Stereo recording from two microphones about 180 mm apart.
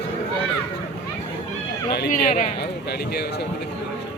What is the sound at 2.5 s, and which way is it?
Speech, 60° left (ahead or behind).